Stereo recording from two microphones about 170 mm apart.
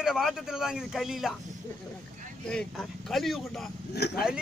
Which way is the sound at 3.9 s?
75° left (ahead or behind).